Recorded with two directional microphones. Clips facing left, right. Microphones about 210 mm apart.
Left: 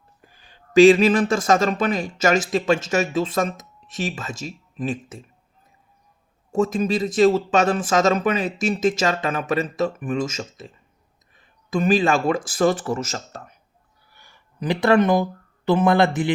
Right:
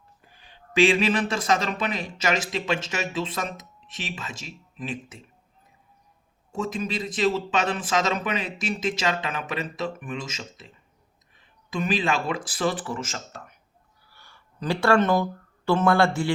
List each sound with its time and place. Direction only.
0.3 s speech: 40° left (ahead or behind)
6.5 s speech: 45° left (ahead or behind)
14.1 s speech: 15° left (ahead or behind)